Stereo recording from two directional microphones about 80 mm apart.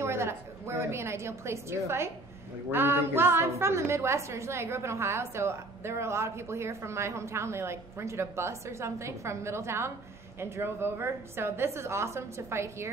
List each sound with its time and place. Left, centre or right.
0.0 s a woman's voice: right